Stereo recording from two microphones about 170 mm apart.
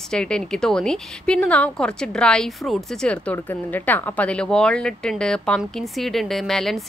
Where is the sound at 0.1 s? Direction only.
5° left (ahead or behind).